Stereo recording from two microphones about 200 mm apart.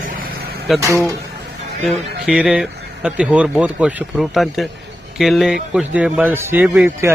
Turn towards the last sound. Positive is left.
turn(degrees=-5)  # may be behind; listen again after turning